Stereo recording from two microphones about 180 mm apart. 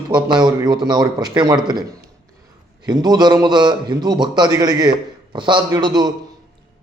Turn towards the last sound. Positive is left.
turn(degrees=-25)  # may be behind; listen again after turning